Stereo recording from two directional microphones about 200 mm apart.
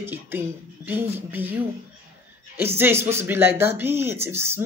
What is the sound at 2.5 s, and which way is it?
Speech, 10° right (ahead or behind).